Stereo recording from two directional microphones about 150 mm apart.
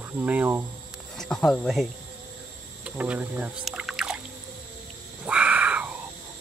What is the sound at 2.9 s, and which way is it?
Speech, 10° right (ahead or behind).